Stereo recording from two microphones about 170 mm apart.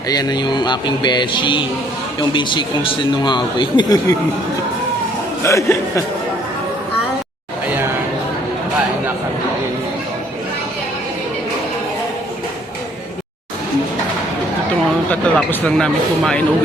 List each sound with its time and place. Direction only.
0.1 s speech: 25° left (ahead or behind)
5.4 s speech: 15° left (ahead or behind)
15.1 s speech: 5° left (ahead or behind)